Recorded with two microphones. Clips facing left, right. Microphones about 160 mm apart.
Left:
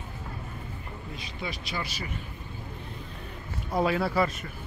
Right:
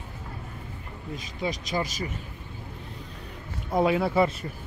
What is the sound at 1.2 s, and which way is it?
Speech, 40° right (ahead or behind).